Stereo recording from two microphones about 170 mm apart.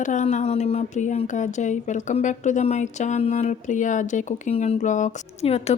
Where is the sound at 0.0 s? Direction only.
45° left (ahead or behind).